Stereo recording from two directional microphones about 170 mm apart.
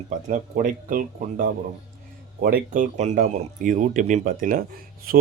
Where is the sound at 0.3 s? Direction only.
55° right (ahead or behind).